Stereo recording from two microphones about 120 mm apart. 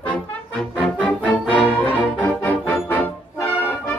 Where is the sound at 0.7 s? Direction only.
10° right (ahead or behind).